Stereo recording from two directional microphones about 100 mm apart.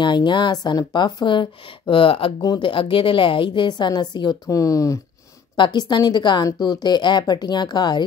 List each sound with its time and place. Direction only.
0.0 s a woman's voice: 50° left (ahead or behind); by 5.0 s 35° left (ahead or behind)
5.6 s a woman's voice: 50° left (ahead or behind)